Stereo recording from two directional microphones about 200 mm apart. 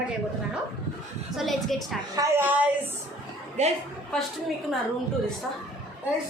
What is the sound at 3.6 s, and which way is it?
Speech, 35° right (ahead or behind).